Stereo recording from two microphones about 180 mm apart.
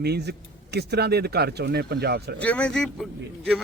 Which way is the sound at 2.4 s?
5° left (ahead or behind).